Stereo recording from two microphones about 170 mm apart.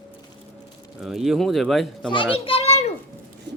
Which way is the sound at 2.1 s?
30° left (ahead or behind).